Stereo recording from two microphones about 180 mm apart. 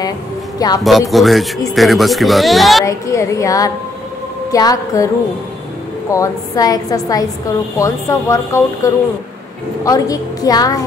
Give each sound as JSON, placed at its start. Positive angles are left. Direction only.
{"t": 0.6, "sound": "a woman's voice", "side_deg": 20}
{"t": 1.1, "sound": "speech", "side_deg": 0}
{"t": 2.8, "sound": "a woman's voice", "side_deg": 15}